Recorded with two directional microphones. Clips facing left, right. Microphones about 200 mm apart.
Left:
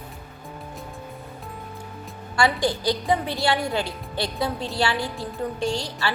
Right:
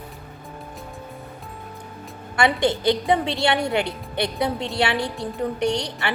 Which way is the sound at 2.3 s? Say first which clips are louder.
Right 2 dB; 20° right (ahead or behind).